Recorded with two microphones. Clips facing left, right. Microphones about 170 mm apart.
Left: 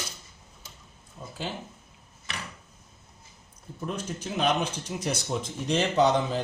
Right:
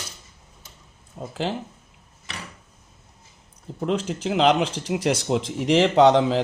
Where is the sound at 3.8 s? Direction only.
85° right.